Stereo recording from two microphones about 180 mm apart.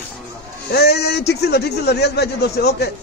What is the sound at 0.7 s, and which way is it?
A man's voice, 65° left (ahead or behind).